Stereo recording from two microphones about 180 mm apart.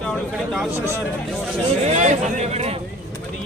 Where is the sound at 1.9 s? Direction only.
40° right (ahead or behind).